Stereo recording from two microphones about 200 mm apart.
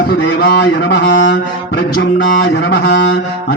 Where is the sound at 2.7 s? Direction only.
60° left (ahead or behind).